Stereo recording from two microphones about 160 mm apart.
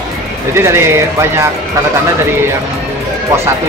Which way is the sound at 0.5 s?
15° right (ahead or behind).